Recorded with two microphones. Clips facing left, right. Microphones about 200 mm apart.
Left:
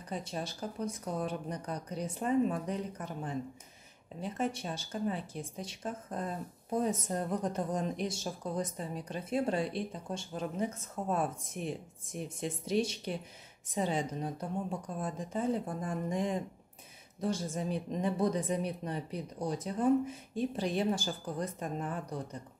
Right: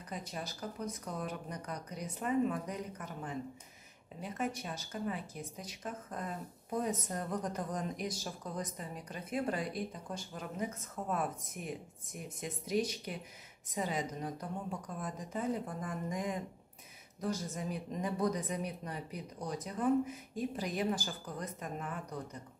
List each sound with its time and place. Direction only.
0.1 s speech: 30° left (ahead or behind)